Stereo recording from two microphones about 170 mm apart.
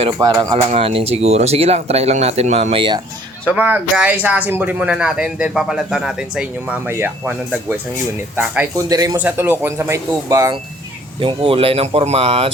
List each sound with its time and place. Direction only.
0.2 s speech: 20° right (ahead or behind)
0.7 s speech: 35° right (ahead or behind)
3.5 s speech: 10° right (ahead or behind)
8.9 s speech: 20° right (ahead or behind)
9.1 s speech: 10° right (ahead or behind)
11.2 s speech: 30° right (ahead or behind)